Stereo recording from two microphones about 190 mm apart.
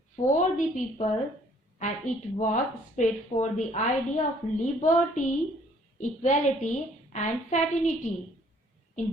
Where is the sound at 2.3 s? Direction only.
40° left (ahead or behind).